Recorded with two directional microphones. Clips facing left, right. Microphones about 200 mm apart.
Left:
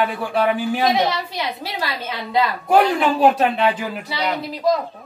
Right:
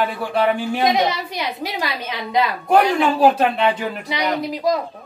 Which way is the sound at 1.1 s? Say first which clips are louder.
Even; 15° right (ahead or behind).